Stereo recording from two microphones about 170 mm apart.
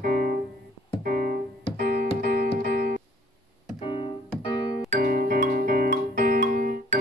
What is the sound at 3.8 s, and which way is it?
Keyboard, 30° left (ahead or behind).